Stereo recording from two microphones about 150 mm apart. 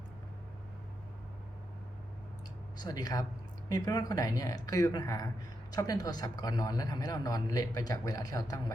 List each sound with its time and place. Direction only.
2.8 s a man's voice: 25° left (ahead or behind)